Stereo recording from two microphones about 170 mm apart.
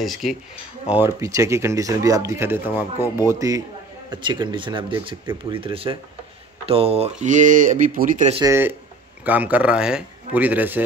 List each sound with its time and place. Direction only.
0.0 s speech: centre (ahead or behind)
0.8 s speech: 10° right (ahead or behind); by 7.2 s 35° right (ahead or behind)
7.2 s speech: 50° right (ahead or behind)
8.4 s speech: 15° right (ahead or behind)